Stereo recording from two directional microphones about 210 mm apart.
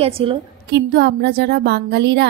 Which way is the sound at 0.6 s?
50° right (ahead or behind).